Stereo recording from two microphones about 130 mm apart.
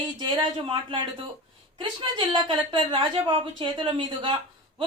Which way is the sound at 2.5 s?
40° right (ahead or behind).